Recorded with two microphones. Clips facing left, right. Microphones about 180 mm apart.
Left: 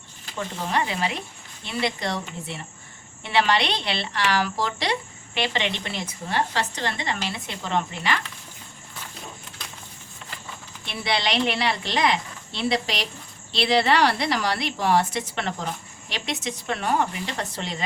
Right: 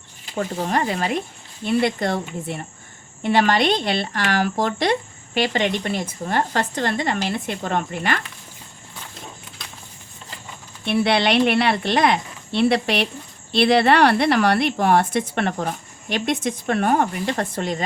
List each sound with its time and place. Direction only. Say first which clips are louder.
0.3 s speech: right 4 dB; 45° right (ahead or behind)
10.8 s a woman's voice: right 8 dB; 60° right (ahead or behind)